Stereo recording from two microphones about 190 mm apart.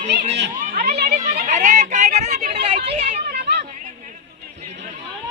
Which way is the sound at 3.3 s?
55° right (ahead or behind).